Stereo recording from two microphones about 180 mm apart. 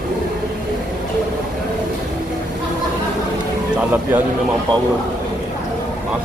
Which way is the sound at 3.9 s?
10° right (ahead or behind).